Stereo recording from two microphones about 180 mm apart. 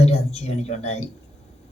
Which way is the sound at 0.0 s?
35° left (ahead or behind).